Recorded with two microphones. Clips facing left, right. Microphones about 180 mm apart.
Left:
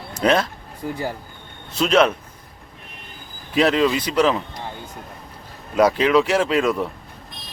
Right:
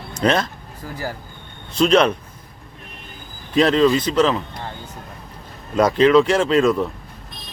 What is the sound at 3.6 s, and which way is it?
Speech, 10° left (ahead or behind).